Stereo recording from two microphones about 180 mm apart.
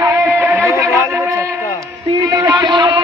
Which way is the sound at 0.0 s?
15° right (ahead or behind).